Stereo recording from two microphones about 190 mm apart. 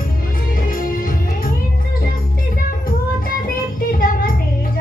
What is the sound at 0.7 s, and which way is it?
Music, 50° left (ahead or behind).